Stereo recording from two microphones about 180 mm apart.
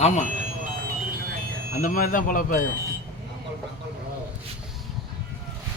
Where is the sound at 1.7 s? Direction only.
50° left (ahead or behind).